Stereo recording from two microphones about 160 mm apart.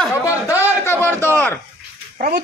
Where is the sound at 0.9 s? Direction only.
10° left (ahead or behind).